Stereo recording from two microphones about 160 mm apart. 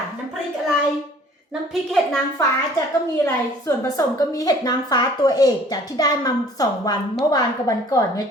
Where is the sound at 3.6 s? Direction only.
20° left (ahead or behind).